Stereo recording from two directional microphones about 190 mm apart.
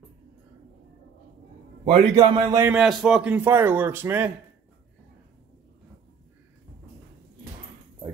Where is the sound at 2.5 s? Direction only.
10° right (ahead or behind).